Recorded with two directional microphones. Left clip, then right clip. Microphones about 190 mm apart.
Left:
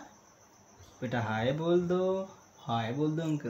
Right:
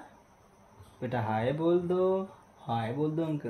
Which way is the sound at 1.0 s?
20° right (ahead or behind).